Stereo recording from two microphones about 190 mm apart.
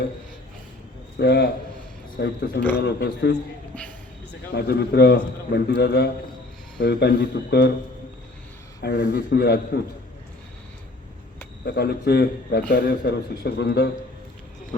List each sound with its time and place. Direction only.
1.2 s a man's voice: 60° left (ahead or behind)
4.5 s a man's voice: 60° left (ahead or behind)
8.8 s a man's voice: 60° left (ahead or behind)
11.6 s a man's voice: 60° left (ahead or behind)